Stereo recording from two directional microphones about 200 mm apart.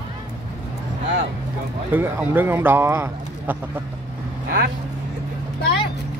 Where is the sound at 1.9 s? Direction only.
10° right (ahead or behind).